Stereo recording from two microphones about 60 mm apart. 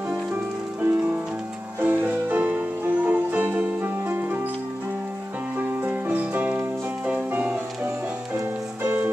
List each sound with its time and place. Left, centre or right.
0.1 s music: right
5.6 s music: right